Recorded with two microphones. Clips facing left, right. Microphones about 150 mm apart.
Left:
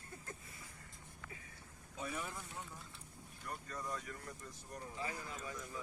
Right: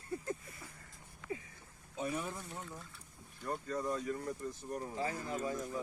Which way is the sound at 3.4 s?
30° right (ahead or behind).